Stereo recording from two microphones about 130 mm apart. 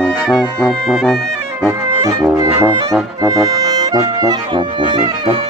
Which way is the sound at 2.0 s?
25° right (ahead or behind).